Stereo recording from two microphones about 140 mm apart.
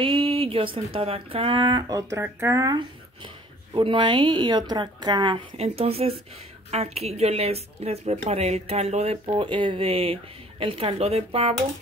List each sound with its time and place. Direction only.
0.0 s speech: 40° right (ahead or behind)
5.6 s speech: 45° right (ahead or behind)
9.2 s speech: 35° right (ahead or behind)